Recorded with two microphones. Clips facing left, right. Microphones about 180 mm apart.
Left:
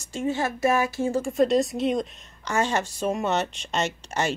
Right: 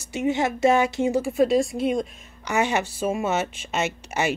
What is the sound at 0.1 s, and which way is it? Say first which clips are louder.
A woman's voice: right 3 dB; 15° right (ahead or behind).